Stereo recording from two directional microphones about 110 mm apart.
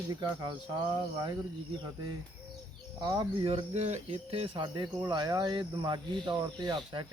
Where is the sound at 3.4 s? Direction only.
60° right (ahead or behind).